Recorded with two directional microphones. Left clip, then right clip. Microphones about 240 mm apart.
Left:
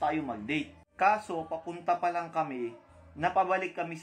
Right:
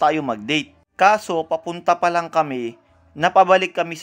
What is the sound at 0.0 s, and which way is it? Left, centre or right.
A man's voice, right.